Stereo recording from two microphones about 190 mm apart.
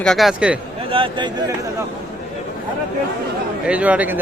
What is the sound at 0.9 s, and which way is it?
Speech, 25° right (ahead or behind).